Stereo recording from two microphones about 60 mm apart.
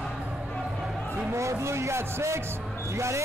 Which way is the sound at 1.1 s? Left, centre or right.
Right.